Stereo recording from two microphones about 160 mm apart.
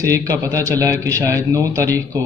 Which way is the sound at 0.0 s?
20° right (ahead or behind).